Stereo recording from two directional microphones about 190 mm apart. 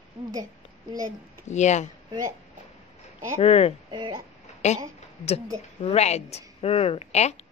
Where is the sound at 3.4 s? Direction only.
30° left (ahead or behind).